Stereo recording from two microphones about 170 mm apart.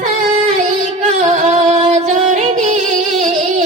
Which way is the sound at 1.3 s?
40° right (ahead or behind).